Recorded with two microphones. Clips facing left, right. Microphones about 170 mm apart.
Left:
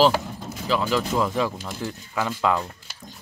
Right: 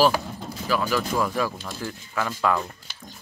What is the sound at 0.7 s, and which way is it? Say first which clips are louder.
Speech: left 1 dB; 20° left (ahead or behind).